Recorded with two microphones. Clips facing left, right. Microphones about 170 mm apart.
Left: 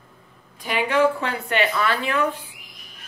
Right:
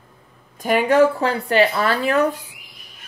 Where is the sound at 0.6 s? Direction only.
45° right (ahead or behind).